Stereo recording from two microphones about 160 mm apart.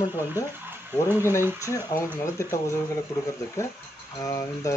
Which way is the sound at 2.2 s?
20° left (ahead or behind).